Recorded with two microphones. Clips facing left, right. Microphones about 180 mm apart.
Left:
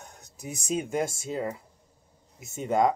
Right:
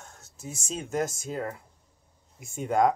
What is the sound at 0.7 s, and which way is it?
Speech, 10° left (ahead or behind).